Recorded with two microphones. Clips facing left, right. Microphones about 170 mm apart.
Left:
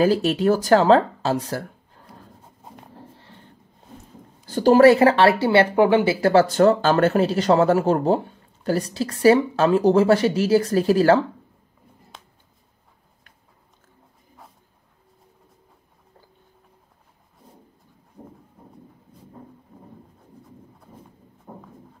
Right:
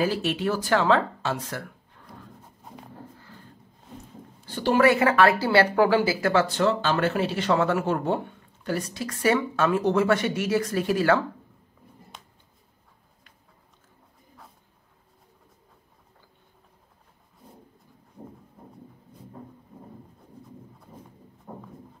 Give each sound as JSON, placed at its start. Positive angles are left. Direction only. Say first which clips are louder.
{"t": 0.0, "sound": "speech", "louder": "left 7 dB", "side_deg": 40}
{"t": 3.2, "sound": "a sound", "louder": "even", "side_deg": 25}
{"t": 4.5, "sound": "speech", "louder": "left 7 dB", "side_deg": 40}